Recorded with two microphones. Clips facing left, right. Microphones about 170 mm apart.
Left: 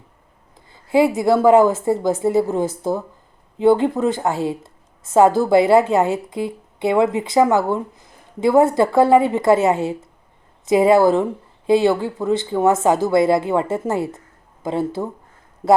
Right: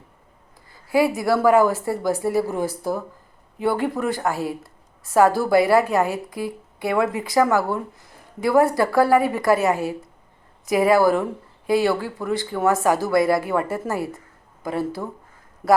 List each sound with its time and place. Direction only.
0.7 s a woman's voice: 25° left (ahead or behind)